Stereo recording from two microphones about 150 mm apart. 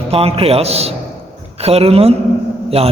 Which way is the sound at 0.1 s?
40° right (ahead or behind).